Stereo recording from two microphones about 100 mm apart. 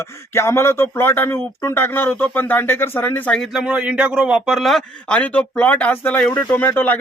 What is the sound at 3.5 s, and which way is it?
A man's voice, 10° right (ahead or behind).